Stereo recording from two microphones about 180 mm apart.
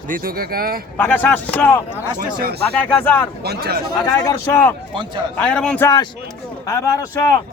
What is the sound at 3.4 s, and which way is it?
Speech, 60° right (ahead or behind).